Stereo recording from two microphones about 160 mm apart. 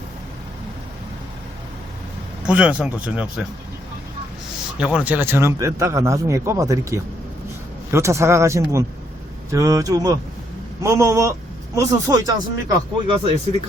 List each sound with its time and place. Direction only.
2.5 s a man's voice: 5° right (ahead or behind)
4.8 s a man's voice: 5° right (ahead or behind); by 13.1 s 20° right (ahead or behind)